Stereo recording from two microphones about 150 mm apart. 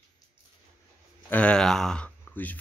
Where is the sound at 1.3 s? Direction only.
10° left (ahead or behind).